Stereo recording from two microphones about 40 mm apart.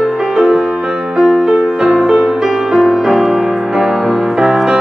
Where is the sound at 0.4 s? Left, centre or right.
Centre.